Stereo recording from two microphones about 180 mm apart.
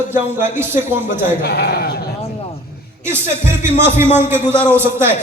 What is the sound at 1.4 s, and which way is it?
Speech, 60° left (ahead or behind).